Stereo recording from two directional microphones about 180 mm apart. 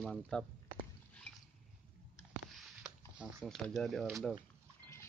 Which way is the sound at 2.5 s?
Centre (ahead or behind).